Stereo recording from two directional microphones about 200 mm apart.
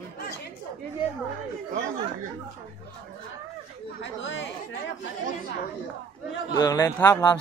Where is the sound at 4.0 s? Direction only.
65° left (ahead or behind).